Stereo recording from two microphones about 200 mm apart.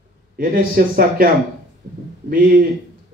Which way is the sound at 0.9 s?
45° right (ahead or behind).